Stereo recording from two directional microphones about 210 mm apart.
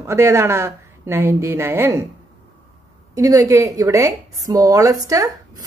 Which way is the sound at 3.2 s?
15° right (ahead or behind).